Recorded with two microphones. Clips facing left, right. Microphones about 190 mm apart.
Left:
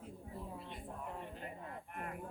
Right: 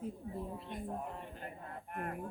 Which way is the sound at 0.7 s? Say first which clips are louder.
Right 5 dB; 45° right (ahead or behind).